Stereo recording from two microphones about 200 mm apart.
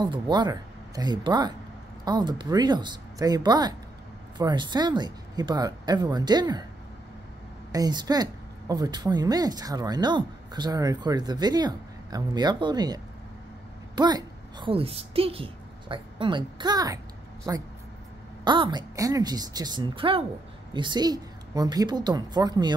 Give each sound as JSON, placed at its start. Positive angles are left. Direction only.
{"t": 0.0, "sound": "speech", "side_deg": -20}
{"t": 7.7, "sound": "a woman's voice", "side_deg": -20}
{"t": 18.4, "sound": "speech", "side_deg": -20}